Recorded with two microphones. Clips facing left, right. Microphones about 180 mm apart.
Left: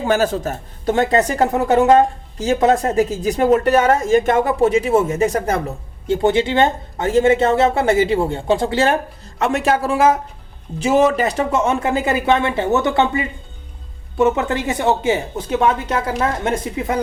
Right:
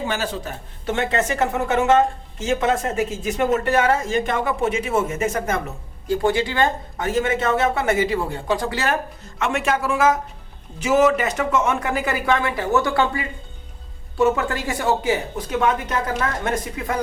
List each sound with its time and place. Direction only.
0.0 s a woman's voice: 45° left (ahead or behind); by 17.0 s 20° left (ahead or behind)